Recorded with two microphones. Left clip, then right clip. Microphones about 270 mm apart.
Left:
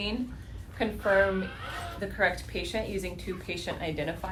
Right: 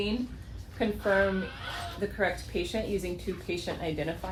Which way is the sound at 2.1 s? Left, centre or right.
Left.